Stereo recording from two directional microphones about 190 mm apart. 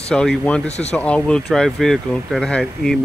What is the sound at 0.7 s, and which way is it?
Speech, 35° left (ahead or behind).